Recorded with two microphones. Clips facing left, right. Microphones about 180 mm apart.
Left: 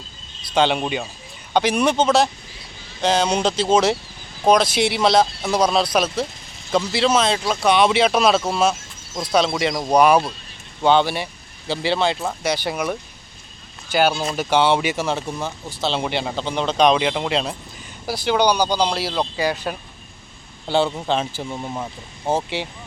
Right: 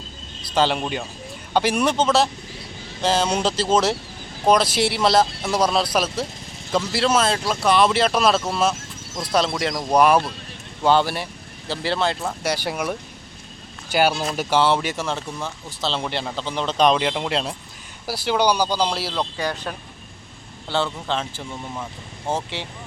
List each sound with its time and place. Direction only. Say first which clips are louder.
0.5 s speech: left 2 dB; 5° right (ahead or behind)
10.8 s speech: left 2 dB; 5° right (ahead or behind)
14.2 s speech: left 1 dB; 5° right (ahead or behind)
16.3 s speech: left 3 dB; 20° left (ahead or behind)
16.6 s speech: left 2 dB; 5° right (ahead or behind)
19.4 s speech: left 4 dB; 10° left (ahead or behind)
22.3 s speech: left 4 dB; 10° left (ahead or behind)